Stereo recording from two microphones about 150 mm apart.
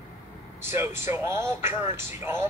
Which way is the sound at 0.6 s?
15° right (ahead or behind).